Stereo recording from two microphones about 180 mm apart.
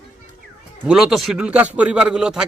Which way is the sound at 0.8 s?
5° right (ahead or behind).